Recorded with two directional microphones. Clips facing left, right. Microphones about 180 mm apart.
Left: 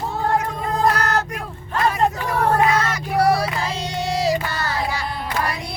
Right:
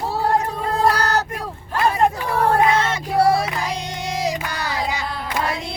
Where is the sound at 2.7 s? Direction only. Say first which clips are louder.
Right 1 dB; 25° right (ahead or behind).